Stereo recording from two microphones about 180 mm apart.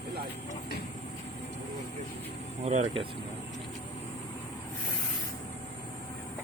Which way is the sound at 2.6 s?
40° right (ahead or behind).